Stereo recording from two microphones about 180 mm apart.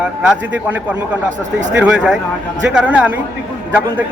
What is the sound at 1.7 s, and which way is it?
Speech, 5° right (ahead or behind).